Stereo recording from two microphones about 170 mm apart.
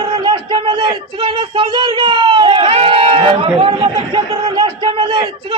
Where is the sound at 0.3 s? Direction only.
30° right (ahead or behind).